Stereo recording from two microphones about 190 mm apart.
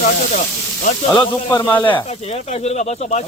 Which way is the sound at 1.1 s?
15° left (ahead or behind).